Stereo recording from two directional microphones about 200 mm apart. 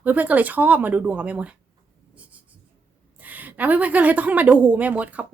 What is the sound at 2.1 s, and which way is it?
Writing, 5° right (ahead or behind).